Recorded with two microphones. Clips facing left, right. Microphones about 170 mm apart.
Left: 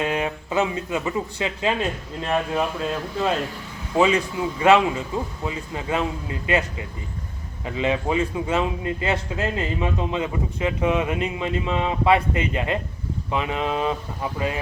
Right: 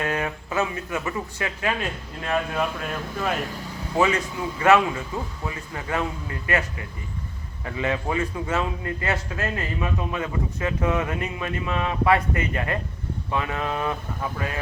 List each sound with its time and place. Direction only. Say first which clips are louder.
0.0 s a man's voice: left 2 dB; 20° left (ahead or behind)